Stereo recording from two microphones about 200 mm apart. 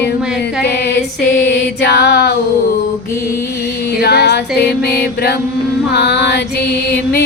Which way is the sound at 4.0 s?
55° left (ahead or behind).